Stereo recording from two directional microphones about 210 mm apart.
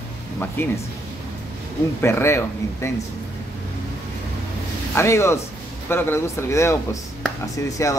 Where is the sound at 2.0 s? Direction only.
10° left (ahead or behind).